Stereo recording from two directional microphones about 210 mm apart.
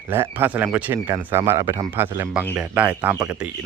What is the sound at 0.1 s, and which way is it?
Speech, 10° right (ahead or behind).